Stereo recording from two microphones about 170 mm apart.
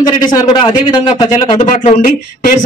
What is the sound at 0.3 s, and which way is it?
A man's voice, 25° left (ahead or behind).